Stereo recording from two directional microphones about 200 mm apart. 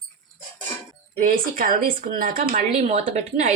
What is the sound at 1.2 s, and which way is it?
A woman's voice, 45° right (ahead or behind).